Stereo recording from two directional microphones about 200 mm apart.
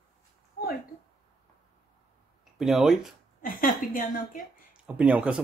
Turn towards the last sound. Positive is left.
turn(degrees=-5)  # may be behind; listen again after turning